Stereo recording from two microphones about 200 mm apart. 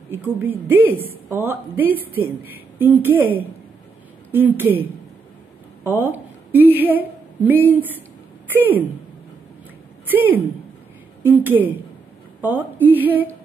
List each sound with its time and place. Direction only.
0.1 s a woman's voice: 10° right (ahead or behind)
4.3 s a woman's voice: 10° right (ahead or behind)
5.9 s a woman's voice: 10° right (ahead or behind)
10.0 s a woman's voice: 10° right (ahead or behind)